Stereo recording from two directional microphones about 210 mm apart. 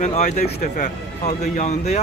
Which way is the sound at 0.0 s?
35° left (ahead or behind).